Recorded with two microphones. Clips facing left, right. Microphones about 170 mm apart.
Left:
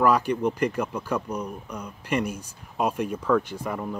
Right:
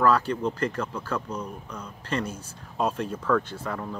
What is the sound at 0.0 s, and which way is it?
Speech, 15° left (ahead or behind).